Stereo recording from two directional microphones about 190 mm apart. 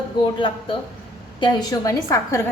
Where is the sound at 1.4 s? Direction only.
20° left (ahead or behind).